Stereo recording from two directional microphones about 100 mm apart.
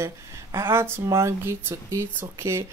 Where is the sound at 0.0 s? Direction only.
30° right (ahead or behind).